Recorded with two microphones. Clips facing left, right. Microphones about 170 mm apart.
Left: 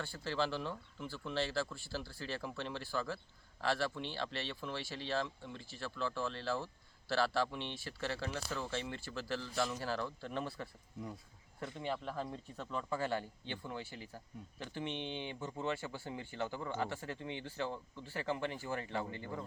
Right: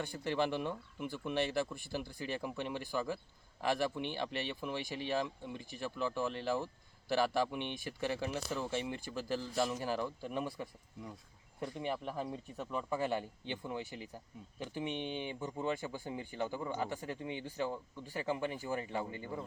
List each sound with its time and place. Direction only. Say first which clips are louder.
0.0 s speech: right 3 dB; 15° right (ahead or behind)
11.8 s speech: right 1 dB; 15° right (ahead or behind)